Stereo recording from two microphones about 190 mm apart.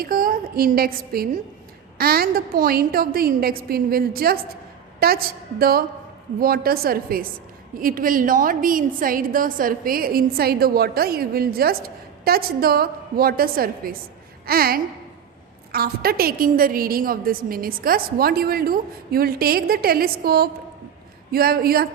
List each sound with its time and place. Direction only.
0.0 s a woman's voice: 50° right (ahead or behind)